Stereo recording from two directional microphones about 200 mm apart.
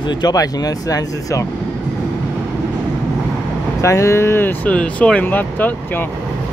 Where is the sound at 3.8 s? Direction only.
15° left (ahead or behind).